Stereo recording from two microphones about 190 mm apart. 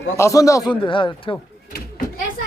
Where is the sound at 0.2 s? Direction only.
15° left (ahead or behind).